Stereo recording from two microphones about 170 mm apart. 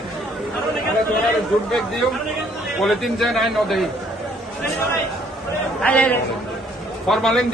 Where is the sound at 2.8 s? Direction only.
Centre (ahead or behind).